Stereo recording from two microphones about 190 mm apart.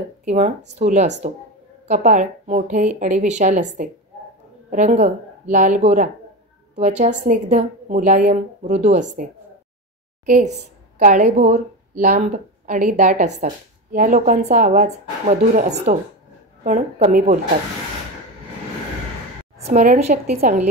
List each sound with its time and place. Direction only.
0.7 s a woman's voice: 35° right (ahead or behind)
10.2 s a woman's voice: 40° right (ahead or behind)
19.7 s a woman's voice: 40° right (ahead or behind)